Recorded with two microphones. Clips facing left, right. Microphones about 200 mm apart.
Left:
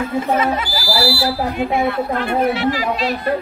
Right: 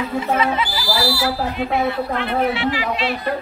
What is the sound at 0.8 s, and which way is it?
Speech, 20° right (ahead or behind).